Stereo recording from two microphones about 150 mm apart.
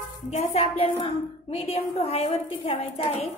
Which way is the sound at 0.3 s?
50° left (ahead or behind).